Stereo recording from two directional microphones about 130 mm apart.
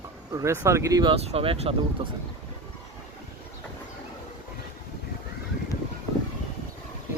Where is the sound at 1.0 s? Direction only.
45° right (ahead or behind).